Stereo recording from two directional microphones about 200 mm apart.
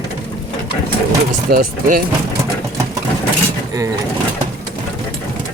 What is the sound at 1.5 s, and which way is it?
Speech, 50° right (ahead or behind).